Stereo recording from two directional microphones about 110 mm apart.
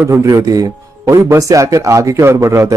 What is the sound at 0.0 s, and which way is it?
Speech, 25° right (ahead or behind).